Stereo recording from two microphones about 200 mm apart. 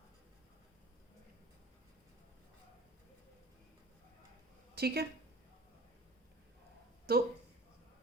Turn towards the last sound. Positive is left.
turn(degrees=-50)  # may be behind; listen again after turning